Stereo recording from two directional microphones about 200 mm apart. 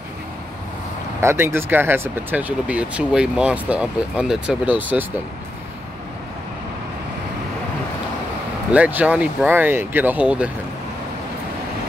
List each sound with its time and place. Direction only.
1.2 s speech: 10° right (ahead or behind)
8.7 s speech: 5° right (ahead or behind)